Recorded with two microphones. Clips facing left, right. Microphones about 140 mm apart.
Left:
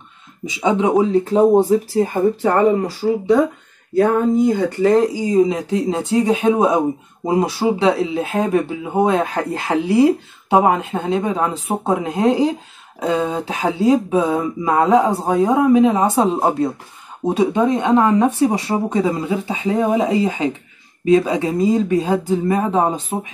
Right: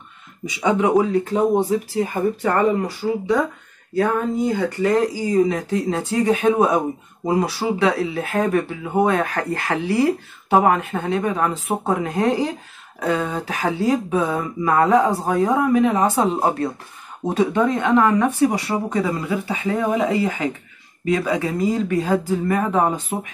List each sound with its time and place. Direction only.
0.5 s speech: 25° left (ahead or behind)
4.6 s speech: 25° left (ahead or behind)